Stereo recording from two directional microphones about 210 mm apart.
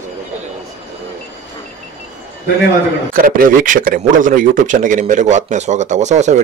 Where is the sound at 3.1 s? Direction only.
40° right (ahead or behind).